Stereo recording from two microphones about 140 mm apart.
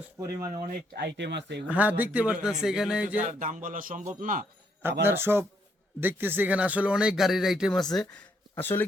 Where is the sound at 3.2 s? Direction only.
65° right (ahead or behind).